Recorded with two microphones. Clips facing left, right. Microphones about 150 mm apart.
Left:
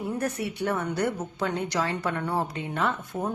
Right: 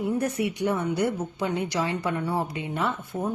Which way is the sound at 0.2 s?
15° right (ahead or behind).